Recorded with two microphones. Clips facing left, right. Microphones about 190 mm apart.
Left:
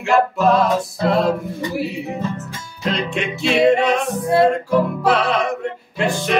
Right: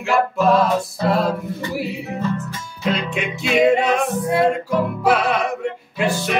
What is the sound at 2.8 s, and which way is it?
Music, 5° right (ahead or behind).